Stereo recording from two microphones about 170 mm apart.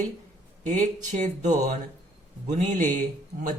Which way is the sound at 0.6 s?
45° right (ahead or behind).